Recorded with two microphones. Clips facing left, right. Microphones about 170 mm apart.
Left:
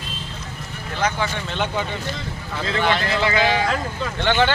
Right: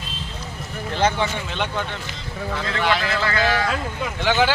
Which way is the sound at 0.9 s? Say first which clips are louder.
Right 2 dB; 30° right (ahead or behind).